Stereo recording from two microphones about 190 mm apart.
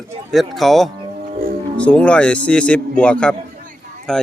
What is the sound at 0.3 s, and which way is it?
A man's voice, centre (ahead or behind).